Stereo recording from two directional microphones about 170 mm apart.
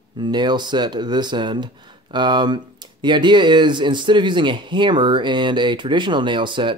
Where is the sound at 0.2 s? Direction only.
25° right (ahead or behind).